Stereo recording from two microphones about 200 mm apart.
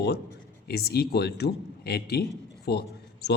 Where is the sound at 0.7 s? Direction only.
50° left (ahead or behind).